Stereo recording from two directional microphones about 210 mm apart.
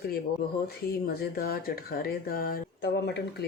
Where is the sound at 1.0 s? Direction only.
45° left (ahead or behind).